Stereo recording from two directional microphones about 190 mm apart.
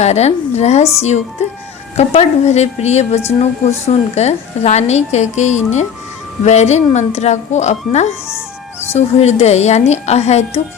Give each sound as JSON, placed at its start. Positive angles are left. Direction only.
{"t": 0.0, "sound": "a woman's voice", "side_deg": 35}
{"t": 2.0, "sound": "a woman's voice", "side_deg": 35}